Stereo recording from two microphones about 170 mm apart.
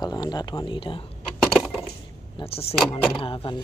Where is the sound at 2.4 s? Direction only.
35° left (ahead or behind).